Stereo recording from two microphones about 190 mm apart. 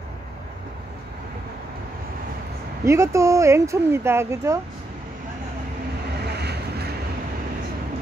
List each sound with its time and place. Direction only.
2.8 s speech: 15° right (ahead or behind)
6.3 s vehicle: 60° right (ahead or behind)